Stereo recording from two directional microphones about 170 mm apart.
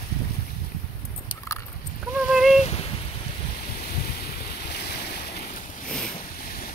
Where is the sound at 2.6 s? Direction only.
40° left (ahead or behind).